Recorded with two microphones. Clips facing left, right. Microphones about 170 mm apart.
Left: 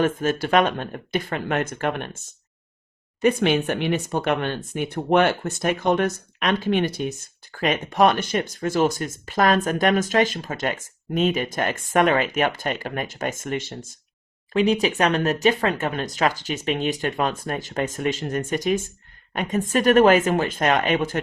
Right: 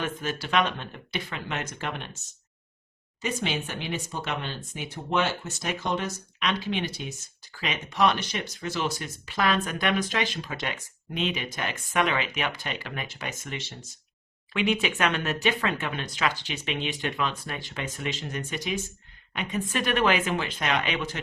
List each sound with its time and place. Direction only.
0.0 s speech: 50° left (ahead or behind)
14.5 s speech: 35° left (ahead or behind)